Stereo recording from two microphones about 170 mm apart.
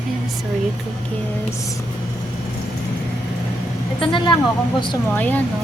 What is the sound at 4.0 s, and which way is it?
A woman's voice, 30° left (ahead or behind).